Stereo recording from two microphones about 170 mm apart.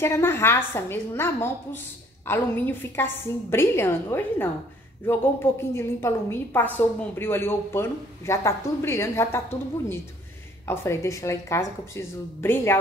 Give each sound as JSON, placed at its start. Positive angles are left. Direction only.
{"t": 0.0, "sound": "a woman's voice", "side_deg": 15}
{"t": 10.7, "sound": "a woman's voice", "side_deg": 15}